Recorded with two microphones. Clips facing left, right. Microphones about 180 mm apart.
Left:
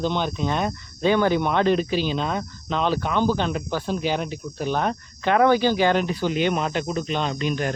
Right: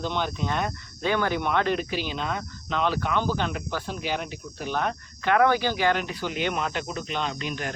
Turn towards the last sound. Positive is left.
turn(degrees=35)  # may be behind; listen again after turning